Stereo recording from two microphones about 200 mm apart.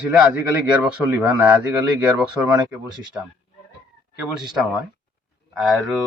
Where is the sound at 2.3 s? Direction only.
20° right (ahead or behind).